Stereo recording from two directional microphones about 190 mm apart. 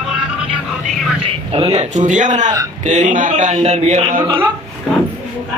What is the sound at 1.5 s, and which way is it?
A man's voice, 30° right (ahead or behind).